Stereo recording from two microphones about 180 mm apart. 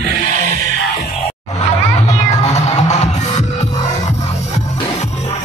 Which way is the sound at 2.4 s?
40° left (ahead or behind).